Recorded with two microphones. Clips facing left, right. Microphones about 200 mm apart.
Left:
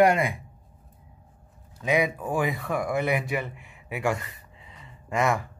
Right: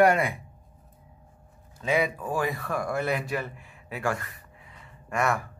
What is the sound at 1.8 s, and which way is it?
Speech, 15° left (ahead or behind).